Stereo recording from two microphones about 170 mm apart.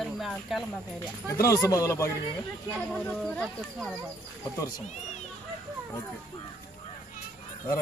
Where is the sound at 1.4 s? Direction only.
15° left (ahead or behind).